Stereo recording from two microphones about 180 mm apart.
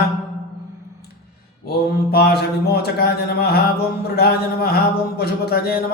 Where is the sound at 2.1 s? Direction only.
60° left (ahead or behind).